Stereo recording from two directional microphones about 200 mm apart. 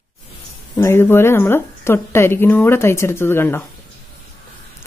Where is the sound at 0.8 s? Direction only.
10° left (ahead or behind).